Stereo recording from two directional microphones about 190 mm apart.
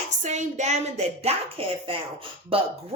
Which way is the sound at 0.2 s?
40° right (ahead or behind).